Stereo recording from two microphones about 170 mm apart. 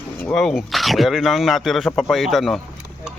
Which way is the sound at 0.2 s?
5° left (ahead or behind).